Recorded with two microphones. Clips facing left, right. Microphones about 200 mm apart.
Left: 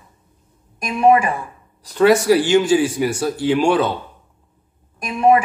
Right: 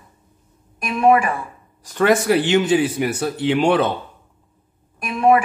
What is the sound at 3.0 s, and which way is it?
Speech, 60° right (ahead or behind).